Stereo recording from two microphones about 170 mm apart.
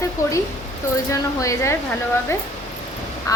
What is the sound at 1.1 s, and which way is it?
Speech, 20° left (ahead or behind).